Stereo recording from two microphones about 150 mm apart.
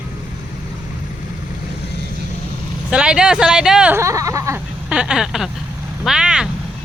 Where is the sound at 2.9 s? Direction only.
5° right (ahead or behind).